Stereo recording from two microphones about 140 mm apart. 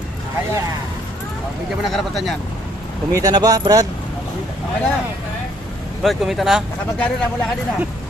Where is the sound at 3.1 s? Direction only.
25° right (ahead or behind).